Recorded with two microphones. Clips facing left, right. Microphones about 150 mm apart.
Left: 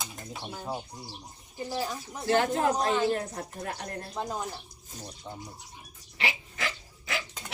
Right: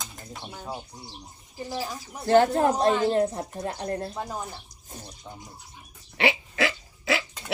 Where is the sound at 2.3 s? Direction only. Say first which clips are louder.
Right 6 dB; 35° right (ahead or behind).